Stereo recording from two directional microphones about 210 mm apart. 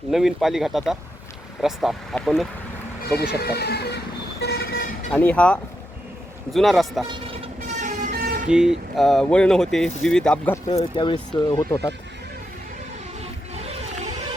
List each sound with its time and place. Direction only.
0.1 s speech: centre (ahead or behind)
3.3 s vehicle: 50° left (ahead or behind)
5.1 s speech: 5° left (ahead or behind)
7.1 s vehicle: 25° right (ahead or behind); by 8.4 s 45° right (ahead or behind)
8.4 s speech: 5° right (ahead or behind)
10.7 s speech: 25° left (ahead or behind)
13.6 s a sound: 30° right (ahead or behind)